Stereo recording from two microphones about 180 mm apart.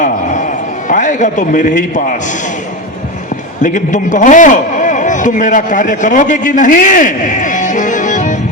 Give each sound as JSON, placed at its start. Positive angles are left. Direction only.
{"t": 0.9, "sound": "a man's voice", "side_deg": 45}
{"t": 3.6, "sound": "a man's voice", "side_deg": 45}